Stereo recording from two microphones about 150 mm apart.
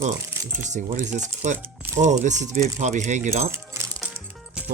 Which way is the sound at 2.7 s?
55° right (ahead or behind).